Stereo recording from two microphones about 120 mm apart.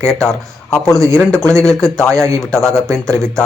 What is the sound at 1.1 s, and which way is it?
Speech, 10° left (ahead or behind).